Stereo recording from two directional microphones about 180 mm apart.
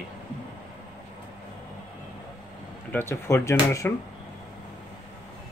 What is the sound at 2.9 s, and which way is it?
Speech, 15° left (ahead or behind).